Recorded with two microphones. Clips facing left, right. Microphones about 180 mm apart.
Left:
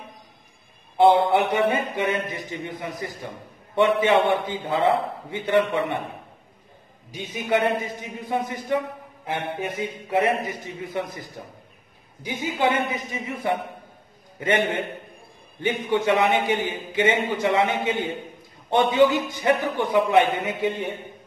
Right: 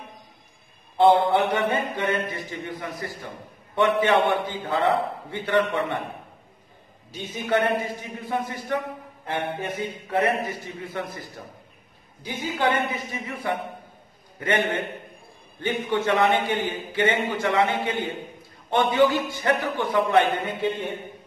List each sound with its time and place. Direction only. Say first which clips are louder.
0.9 s a man's voice: left 1 dB; 15° left (ahead or behind)
7.1 s a man's voice: left 1 dB; 15° left (ahead or behind)